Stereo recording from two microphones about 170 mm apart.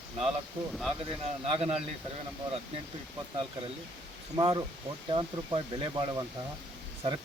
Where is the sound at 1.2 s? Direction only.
35° right (ahead or behind).